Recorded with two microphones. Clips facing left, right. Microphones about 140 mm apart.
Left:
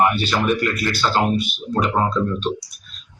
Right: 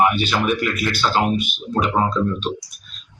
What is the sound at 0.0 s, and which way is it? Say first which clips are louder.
Speech: even; centre (ahead or behind).